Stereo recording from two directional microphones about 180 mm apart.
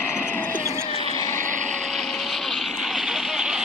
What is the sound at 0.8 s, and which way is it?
Wild animals, 25° left (ahead or behind).